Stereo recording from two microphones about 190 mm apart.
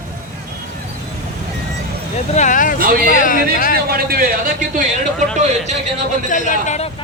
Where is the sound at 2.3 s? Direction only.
40° left (ahead or behind).